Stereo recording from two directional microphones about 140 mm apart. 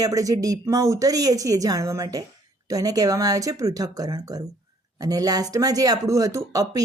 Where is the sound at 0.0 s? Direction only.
25° right (ahead or behind).